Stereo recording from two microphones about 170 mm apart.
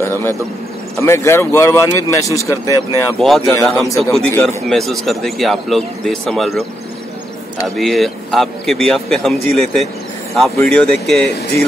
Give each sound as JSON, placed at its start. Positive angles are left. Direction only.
{"t": 0.0, "sound": "speech", "side_deg": 15}
{"t": 3.2, "sound": "speech", "side_deg": 0}
{"t": 4.3, "sound": "speech", "side_deg": 15}
{"t": 4.6, "sound": "speech", "side_deg": 0}
{"t": 7.6, "sound": "speech", "side_deg": 0}